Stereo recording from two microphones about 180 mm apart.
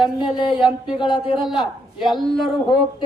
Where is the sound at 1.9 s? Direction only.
Centre (ahead or behind).